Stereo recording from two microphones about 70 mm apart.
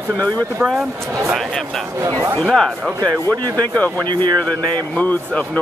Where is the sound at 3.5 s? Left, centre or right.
Centre.